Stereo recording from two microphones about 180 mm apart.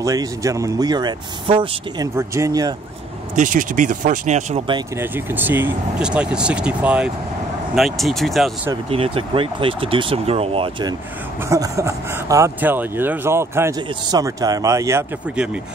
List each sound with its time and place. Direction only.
0.0 s speech: 20° right (ahead or behind)
3.3 s speech: 45° right (ahead or behind)
4.9 s speech: 10° right (ahead or behind)
8.8 s speech: 30° right (ahead or behind); by 15.6 s 5° right (ahead or behind)